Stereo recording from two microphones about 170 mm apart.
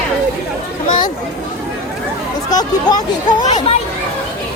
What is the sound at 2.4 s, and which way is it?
Speech, 20° left (ahead or behind).